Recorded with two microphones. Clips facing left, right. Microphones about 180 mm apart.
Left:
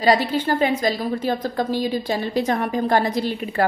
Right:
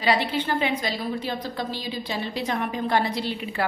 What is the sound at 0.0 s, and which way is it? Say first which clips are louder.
A woman's voice: left 5 dB; 40° left (ahead or behind).